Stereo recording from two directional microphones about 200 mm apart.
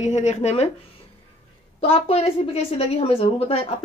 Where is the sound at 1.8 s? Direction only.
30° left (ahead or behind).